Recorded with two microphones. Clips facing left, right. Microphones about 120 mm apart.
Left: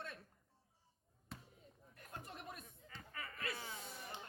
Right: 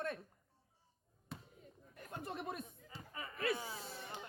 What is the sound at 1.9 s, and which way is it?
Speech, 70° right (ahead or behind).